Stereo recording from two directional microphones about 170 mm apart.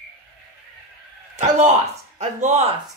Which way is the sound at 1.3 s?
40° right (ahead or behind).